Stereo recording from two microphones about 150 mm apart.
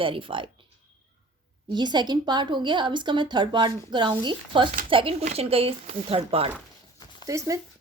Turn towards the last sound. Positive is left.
turn(degrees=-20)  # may be behind; listen again after turning